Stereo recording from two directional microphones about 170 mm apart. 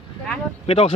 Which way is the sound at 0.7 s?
35° left (ahead or behind).